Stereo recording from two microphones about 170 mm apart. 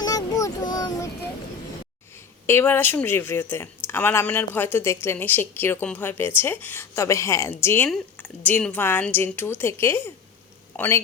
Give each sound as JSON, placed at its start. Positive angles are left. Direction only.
{"t": 0.0, "sound": "child singing", "side_deg": 20}
{"t": 2.5, "sound": "speech", "side_deg": 15}